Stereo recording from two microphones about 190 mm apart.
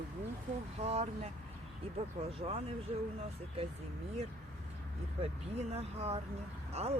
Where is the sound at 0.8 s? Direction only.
35° right (ahead or behind).